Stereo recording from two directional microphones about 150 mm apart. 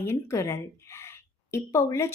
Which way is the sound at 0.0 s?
20° left (ahead or behind).